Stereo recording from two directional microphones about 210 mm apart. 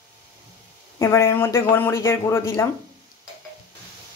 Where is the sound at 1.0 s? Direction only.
10° left (ahead or behind).